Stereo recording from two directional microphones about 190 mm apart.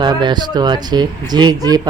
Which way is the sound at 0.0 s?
25° right (ahead or behind).